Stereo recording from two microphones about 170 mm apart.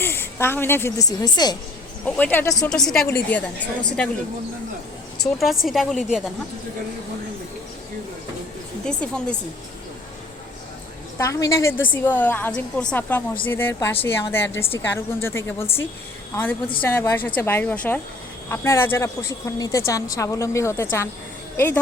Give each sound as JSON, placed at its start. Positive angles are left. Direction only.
{"t": 0.0, "sound": "speech", "side_deg": 15}
{"t": 2.0, "sound": "a woman's voice", "side_deg": 10}
{"t": 2.6, "sound": "a woman's voice", "side_deg": 5}
{"t": 5.2, "sound": "speech", "side_deg": 0}
{"t": 8.8, "sound": "speech", "side_deg": 5}
{"t": 11.2, "sound": "a woman's voice", "side_deg": 20}